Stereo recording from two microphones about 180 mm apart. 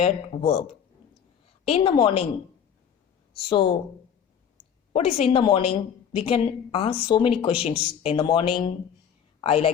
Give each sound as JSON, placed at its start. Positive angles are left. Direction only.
{"t": 0.0, "sound": "speech", "side_deg": 35}
{"t": 1.6, "sound": "speech", "side_deg": 30}
{"t": 3.3, "sound": "speech", "side_deg": 30}
{"t": 4.9, "sound": "a woman's voice", "side_deg": 35}